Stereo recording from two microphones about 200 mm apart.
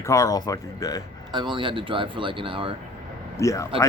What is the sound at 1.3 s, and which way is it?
Speech, 25° right (ahead or behind).